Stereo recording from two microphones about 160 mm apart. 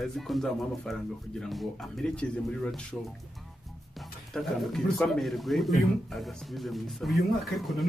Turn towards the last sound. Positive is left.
turn(degrees=0)  # may be behind; listen again after turning